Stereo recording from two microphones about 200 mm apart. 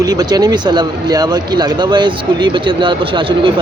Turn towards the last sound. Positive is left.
turn(degrees=-25)  # may be behind; listen again after turning